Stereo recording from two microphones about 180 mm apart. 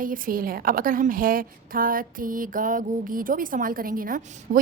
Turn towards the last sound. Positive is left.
turn(degrees=-45)  # may be behind; listen again after turning